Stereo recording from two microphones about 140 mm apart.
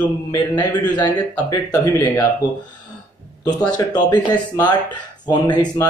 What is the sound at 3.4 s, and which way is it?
Speech, 30° left (ahead or behind).